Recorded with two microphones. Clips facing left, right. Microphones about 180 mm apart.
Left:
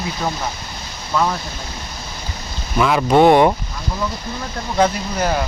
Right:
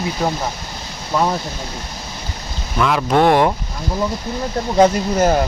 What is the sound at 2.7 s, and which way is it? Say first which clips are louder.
Speech: left 2 dB; 5° left (ahead or behind).